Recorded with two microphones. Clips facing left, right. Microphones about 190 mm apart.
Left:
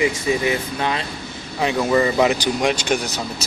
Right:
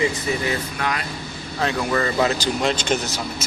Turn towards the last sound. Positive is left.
turn(degrees=15)  # may be behind; listen again after turning